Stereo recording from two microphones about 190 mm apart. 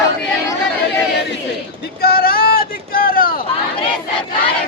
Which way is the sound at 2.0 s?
55° left (ahead or behind).